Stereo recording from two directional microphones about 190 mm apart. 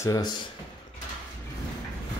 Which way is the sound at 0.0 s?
20° left (ahead or behind).